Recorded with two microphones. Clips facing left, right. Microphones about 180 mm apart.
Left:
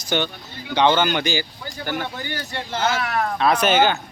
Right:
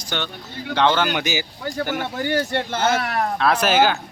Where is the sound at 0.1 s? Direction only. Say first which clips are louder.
Left 5 dB; 15° left (ahead or behind).